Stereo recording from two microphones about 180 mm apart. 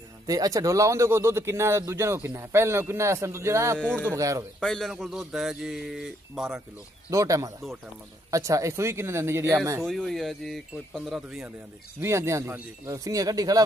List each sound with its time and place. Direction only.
0.3 s speech: 20° right (ahead or behind)
4.6 s speech: 5° left (ahead or behind)
7.1 s speech: 20° right (ahead or behind)
9.8 s speech: centre (ahead or behind)
12.0 s speech: 15° right (ahead or behind)